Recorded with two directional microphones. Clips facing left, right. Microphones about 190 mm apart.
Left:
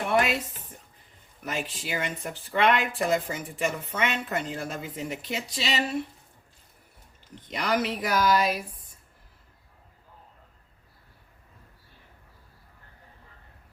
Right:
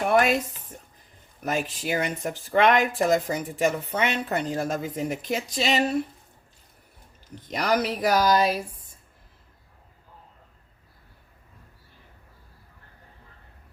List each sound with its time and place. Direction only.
1.5 s speech: 45° right (ahead or behind)
7.5 s speech: 40° right (ahead or behind)